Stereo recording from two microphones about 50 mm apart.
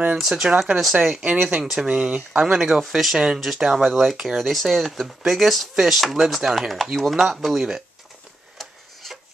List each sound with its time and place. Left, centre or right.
0.2 s speech: centre
2.4 s speech: centre
8.5 s a sound: centre